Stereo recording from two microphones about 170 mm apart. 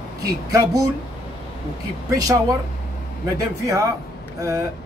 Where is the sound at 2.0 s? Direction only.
20° right (ahead or behind).